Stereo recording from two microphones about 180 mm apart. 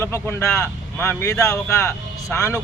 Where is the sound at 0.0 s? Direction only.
15° left (ahead or behind).